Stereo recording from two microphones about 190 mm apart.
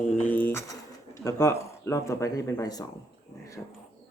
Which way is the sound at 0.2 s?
10° left (ahead or behind).